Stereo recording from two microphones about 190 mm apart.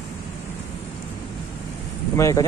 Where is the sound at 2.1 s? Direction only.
15° left (ahead or behind).